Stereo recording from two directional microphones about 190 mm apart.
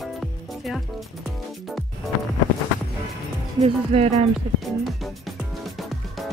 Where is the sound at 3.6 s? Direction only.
30° right (ahead or behind).